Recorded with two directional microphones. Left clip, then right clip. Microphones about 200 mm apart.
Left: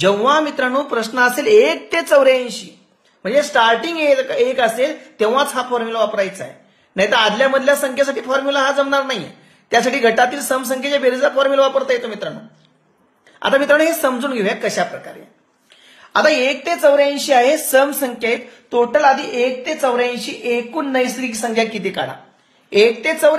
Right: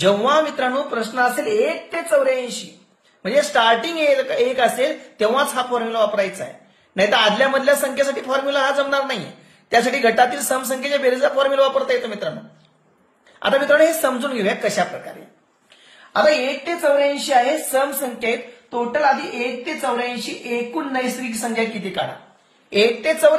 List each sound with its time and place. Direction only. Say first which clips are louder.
0.0 s speech: left 2 dB; 25° left (ahead or behind)
1.9 s a woman's voice: left 5 dB; 55° left (ahead or behind)
3.2 s speech: left 2 dB; 20° left (ahead or behind)
13.4 s speech: left 1 dB; 30° left (ahead or behind)
16.4 s a woman's voice: left 5 dB; 60° left (ahead or behind)
18.7 s a woman's voice: left 5 dB; 60° left (ahead or behind)
22.7 s a woman's voice: left 3 dB; 30° left (ahead or behind)